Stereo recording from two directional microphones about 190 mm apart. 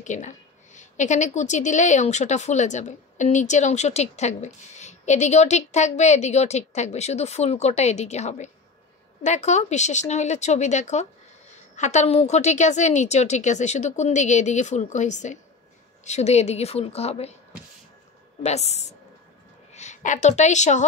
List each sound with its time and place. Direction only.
0.0 s a woman's voice: 40° left (ahead or behind)
18.4 s a woman's voice: 35° left (ahead or behind)